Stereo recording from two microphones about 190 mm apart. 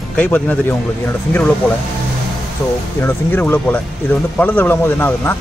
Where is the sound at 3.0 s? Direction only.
10° left (ahead or behind).